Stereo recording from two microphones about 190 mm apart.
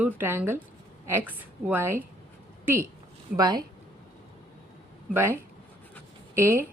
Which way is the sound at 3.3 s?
20° right (ahead or behind).